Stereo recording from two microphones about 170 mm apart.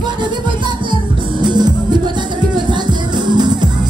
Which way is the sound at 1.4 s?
25° right (ahead or behind).